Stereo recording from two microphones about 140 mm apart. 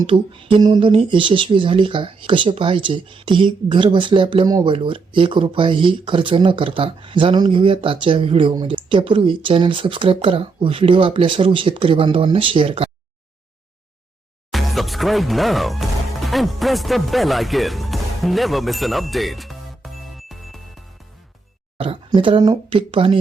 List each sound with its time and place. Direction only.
0.0 s speech: 35° right (ahead or behind)
14.5 s speech: centre (ahead or behind)
21.8 s speech: 40° right (ahead or behind)